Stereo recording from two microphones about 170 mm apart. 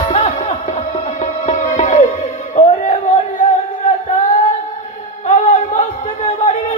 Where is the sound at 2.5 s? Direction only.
40° left (ahead or behind).